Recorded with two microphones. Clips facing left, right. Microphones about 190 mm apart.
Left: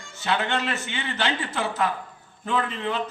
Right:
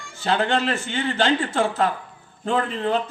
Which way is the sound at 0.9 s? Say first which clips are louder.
Right 9 dB; 45° right (ahead or behind).